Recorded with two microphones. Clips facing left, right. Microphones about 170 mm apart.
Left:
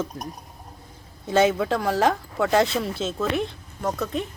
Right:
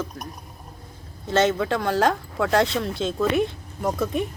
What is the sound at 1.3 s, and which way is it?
Speech, 10° left (ahead or behind).